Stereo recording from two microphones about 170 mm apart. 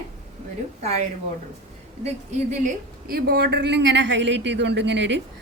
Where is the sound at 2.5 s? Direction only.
55° right (ahead or behind); by 5.2 s 90° right.